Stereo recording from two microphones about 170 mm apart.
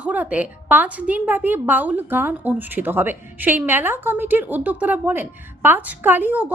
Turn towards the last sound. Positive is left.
turn(degrees=-10)  # may be behind; listen again after turning